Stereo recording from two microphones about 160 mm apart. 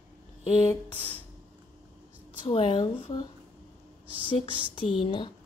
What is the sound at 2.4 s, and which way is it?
Speech, 35° left (ahead or behind).